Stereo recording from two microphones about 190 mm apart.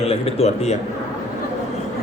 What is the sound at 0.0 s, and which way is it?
Speech, 30° left (ahead or behind).